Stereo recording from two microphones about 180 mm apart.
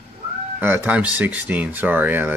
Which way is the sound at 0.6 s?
10° right (ahead or behind).